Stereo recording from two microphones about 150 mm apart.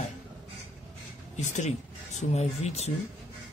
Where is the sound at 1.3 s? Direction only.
50° left (ahead or behind).